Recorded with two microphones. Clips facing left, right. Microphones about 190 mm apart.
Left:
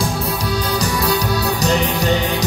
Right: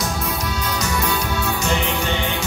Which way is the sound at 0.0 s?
35° left (ahead or behind).